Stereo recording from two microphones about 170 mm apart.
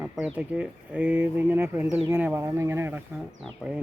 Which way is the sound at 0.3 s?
5° right (ahead or behind).